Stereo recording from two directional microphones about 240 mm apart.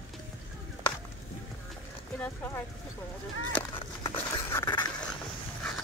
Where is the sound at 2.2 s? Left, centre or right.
Centre.